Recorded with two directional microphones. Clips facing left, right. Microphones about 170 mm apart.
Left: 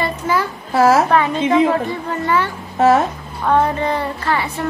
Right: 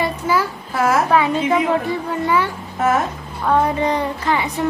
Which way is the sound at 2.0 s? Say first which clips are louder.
Even; 10° right (ahead or behind).